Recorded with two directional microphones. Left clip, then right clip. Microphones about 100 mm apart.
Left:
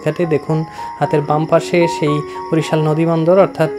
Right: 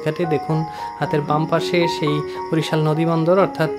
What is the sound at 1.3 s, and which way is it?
Speech, 20° left (ahead or behind).